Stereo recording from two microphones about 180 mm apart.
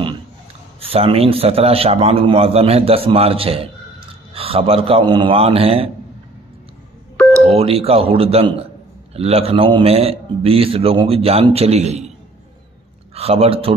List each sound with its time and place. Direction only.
0.7 s a man's voice: 30° right (ahead or behind)
7.4 s a man's voice: 35° right (ahead or behind)
13.1 s a man's voice: 35° right (ahead or behind)